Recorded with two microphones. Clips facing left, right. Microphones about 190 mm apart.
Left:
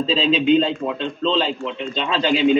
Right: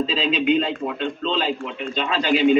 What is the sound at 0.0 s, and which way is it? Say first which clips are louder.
A man's voice: left 3 dB; 30° left (ahead or behind).